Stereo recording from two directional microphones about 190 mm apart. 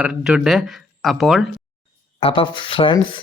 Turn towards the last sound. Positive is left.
turn(degrees=25)  # may be behind; listen again after turning